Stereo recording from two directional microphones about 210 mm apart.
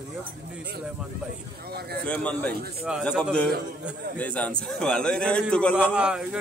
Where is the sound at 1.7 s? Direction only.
50° right (ahead or behind).